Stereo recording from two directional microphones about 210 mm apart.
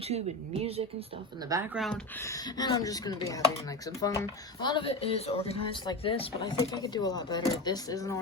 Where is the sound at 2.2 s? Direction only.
15° left (ahead or behind).